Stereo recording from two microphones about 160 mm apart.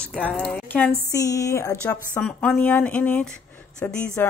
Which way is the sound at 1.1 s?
20° left (ahead or behind).